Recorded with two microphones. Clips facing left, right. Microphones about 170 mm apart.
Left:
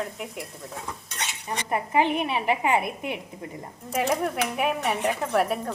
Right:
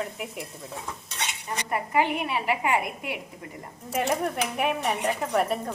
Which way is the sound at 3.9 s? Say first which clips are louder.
Left 1 dB; centre (ahead or behind).